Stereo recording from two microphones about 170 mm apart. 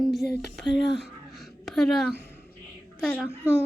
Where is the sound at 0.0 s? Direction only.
Centre (ahead or behind).